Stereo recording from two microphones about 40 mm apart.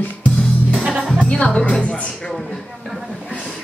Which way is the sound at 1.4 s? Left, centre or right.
Left.